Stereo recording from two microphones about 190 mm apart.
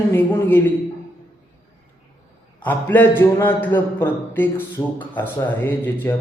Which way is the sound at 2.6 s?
10° left (ahead or behind).